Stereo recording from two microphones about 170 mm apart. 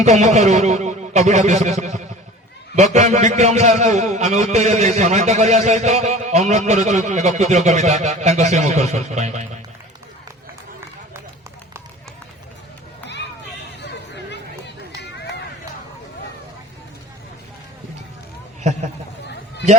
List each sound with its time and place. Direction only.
0.0 s a man's voice: 40° right (ahead or behind)